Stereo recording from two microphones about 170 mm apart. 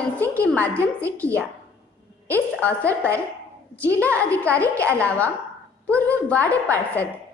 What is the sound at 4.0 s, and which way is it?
A woman's voice, 10° left (ahead or behind).